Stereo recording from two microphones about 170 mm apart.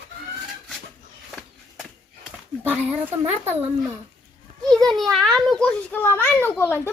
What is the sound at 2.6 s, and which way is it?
Speech, 10° right (ahead or behind).